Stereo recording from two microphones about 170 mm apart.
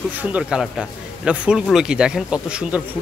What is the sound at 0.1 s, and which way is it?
A man's voice, 10° right (ahead or behind).